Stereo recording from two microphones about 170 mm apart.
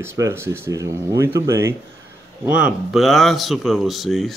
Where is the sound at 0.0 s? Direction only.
15° right (ahead or behind).